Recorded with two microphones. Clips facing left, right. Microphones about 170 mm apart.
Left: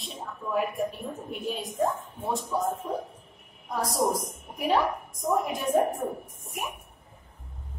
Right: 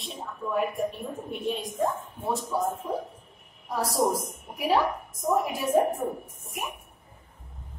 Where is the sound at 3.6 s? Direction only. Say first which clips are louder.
Right 1 dB; 10° right (ahead or behind).